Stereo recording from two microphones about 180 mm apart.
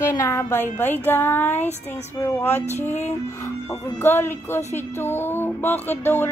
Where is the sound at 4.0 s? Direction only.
10° left (ahead or behind).